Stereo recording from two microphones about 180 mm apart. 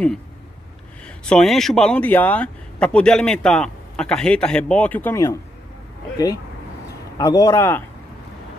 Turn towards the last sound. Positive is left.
turn(degrees=15)  # may be behind; listen again after turning